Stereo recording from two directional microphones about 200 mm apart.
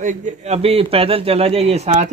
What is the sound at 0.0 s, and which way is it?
Speech, 40° right (ahead or behind).